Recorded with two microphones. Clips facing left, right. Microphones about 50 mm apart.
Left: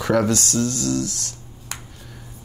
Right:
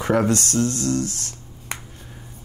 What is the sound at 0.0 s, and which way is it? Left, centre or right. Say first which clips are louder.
Speech: even; right.